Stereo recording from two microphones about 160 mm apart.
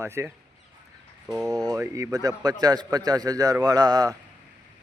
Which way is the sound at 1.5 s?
25° right (ahead or behind).